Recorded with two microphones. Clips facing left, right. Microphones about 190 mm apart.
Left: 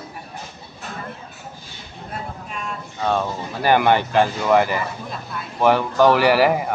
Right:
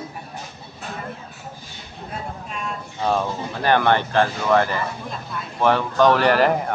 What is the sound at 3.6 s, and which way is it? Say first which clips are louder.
Speech: left 2 dB; 10° left (ahead or behind).